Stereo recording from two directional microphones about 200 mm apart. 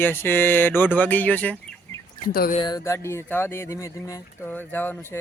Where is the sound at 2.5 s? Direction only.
20° left (ahead or behind).